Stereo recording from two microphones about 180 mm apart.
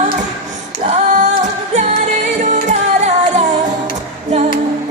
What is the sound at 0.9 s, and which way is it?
Music, 40° right (ahead or behind).